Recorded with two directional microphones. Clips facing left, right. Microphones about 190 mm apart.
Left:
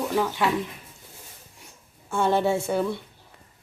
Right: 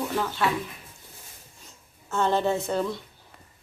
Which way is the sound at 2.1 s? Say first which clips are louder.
Left 2 dB; 10° left (ahead or behind).